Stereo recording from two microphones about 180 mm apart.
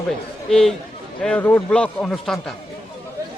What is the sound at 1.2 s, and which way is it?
Speech, 5° left (ahead or behind).